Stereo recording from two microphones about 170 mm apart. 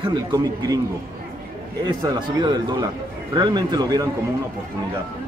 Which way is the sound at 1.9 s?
25° right (ahead or behind).